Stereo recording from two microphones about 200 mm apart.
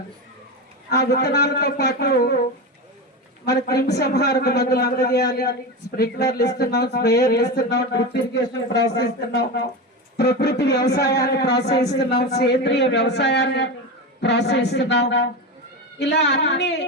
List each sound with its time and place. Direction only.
0.9 s a man's voice: 55° left (ahead or behind)